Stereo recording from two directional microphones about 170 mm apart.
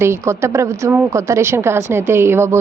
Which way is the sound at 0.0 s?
15° right (ahead or behind).